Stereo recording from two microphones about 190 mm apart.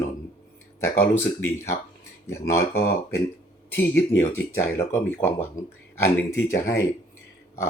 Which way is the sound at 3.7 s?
10° left (ahead or behind).